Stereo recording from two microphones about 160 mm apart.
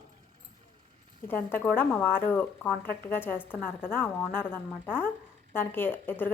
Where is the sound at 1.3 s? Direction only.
10° left (ahead or behind).